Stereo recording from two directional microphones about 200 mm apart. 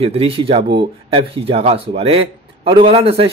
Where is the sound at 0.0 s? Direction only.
30° right (ahead or behind).